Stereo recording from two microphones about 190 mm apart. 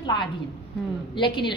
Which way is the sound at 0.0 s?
25° left (ahead or behind).